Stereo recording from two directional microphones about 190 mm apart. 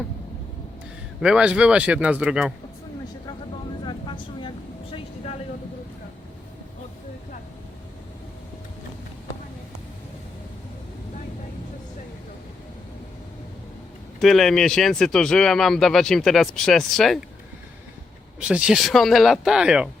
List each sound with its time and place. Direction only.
1.2 s speech: 5° right (ahead or behind)
3.8 s vehicle: 25° left (ahead or behind)
14.2 s speech: centre (ahead or behind)
18.3 s speech: 5° right (ahead or behind)